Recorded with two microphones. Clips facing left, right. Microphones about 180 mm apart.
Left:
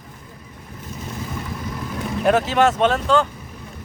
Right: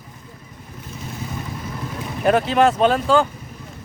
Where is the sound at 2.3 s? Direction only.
Centre (ahead or behind).